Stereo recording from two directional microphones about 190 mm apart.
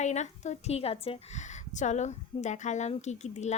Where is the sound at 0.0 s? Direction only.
40° left (ahead or behind).